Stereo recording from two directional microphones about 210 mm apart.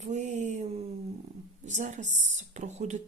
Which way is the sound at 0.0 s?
35° right (ahead or behind).